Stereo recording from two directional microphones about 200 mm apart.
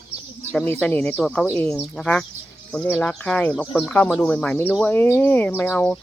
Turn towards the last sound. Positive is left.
turn(degrees=10)  # may be behind; listen again after turning